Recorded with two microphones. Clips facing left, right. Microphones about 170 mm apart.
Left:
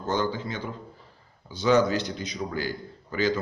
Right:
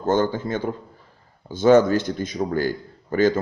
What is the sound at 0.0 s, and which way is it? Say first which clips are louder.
Speech: right 7 dB; 50° right (ahead or behind).